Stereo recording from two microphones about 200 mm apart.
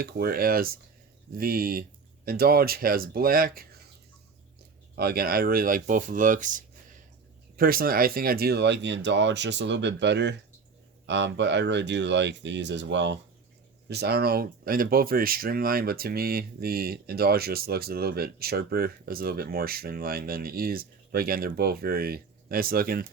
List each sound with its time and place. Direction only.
0.0 s speech: 50° right (ahead or behind)
4.9 s speech: 50° right (ahead or behind)